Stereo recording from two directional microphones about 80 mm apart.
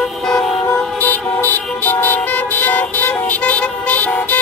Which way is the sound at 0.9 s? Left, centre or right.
Left.